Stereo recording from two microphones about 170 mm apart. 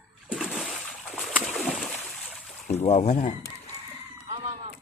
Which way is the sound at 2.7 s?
40° left (ahead or behind).